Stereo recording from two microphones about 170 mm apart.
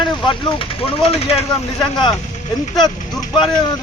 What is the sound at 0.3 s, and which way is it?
Speech, 30° left (ahead or behind).